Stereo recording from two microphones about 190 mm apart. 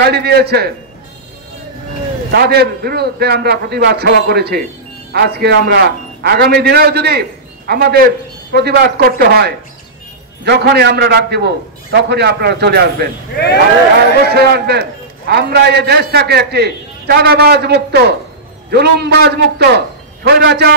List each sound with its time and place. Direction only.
0.0 s a man's voice: 55° right (ahead or behind)
2.3 s a man's voice: 60° right (ahead or behind)
14.2 s a man's voice: 60° right (ahead or behind)